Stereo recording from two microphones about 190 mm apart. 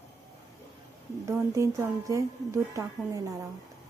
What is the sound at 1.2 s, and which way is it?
A woman's voice, 15° right (ahead or behind).